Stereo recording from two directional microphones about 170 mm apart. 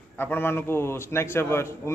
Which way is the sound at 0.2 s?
15° left (ahead or behind).